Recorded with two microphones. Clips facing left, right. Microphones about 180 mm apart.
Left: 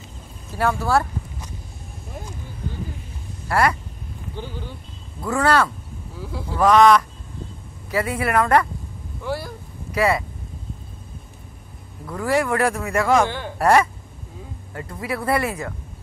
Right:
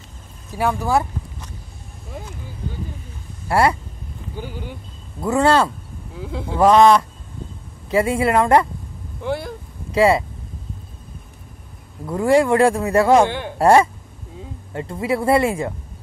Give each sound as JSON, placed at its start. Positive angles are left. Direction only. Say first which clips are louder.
{"t": 0.5, "sound": "speech", "louder": "right 1 dB", "side_deg": -15}
{"t": 3.4, "sound": "speech", "louder": "right 3 dB", "side_deg": -30}
{"t": 4.4, "sound": "speech", "louder": "right 2 dB", "side_deg": -15}
{"t": 5.2, "sound": "speech", "louder": "right 3 dB", "side_deg": -25}
{"t": 12.1, "sound": "speech", "louder": "right 6 dB", "side_deg": -25}